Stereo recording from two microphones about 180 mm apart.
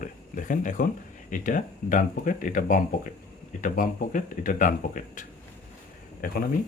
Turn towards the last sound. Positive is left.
turn(degrees=55)  # may be behind; listen again after turning